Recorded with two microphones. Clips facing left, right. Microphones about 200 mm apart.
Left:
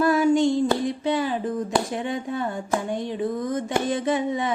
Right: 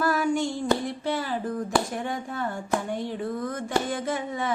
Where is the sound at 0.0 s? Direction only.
20° left (ahead or behind).